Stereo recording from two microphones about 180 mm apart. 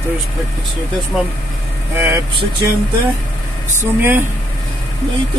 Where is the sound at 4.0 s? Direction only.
10° right (ahead or behind).